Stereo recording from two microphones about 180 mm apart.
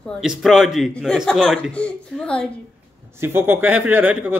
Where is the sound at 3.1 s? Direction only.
10° right (ahead or behind).